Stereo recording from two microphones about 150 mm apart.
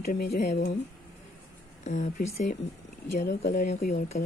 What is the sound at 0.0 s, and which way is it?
Speech, 65° left (ahead or behind).